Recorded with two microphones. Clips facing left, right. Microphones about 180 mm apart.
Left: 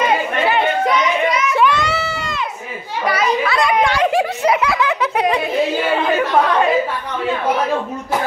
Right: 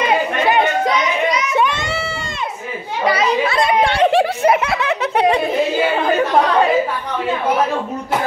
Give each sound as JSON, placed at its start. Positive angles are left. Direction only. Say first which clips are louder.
{"t": 1.5, "sound": "a sound", "louder": "left 2 dB", "side_deg": -25}
{"t": 3.1, "sound": "children playing", "louder": "right 1 dB", "side_deg": -25}
{"t": 4.6, "sound": "giggle", "louder": "left 1 dB", "side_deg": -25}